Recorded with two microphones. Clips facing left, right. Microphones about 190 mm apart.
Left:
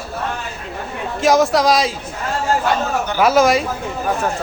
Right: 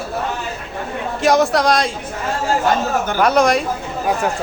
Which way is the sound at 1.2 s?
Centre (ahead or behind).